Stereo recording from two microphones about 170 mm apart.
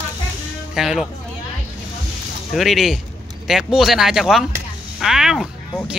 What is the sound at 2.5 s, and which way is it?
Speech, centre (ahead or behind).